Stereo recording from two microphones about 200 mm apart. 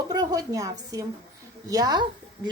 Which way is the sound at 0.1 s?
20° right (ahead or behind).